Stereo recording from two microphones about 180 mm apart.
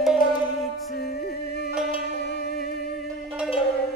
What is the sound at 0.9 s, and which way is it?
Music, 65° left (ahead or behind).